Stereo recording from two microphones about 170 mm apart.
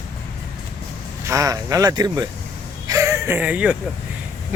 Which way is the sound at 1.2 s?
20° right (ahead or behind).